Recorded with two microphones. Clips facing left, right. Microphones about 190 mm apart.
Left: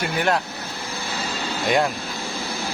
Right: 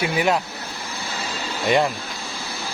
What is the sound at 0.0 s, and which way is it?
Speech, 5° right (ahead or behind).